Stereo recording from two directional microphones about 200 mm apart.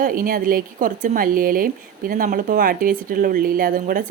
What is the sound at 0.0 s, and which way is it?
Speech, 45° right (ahead or behind).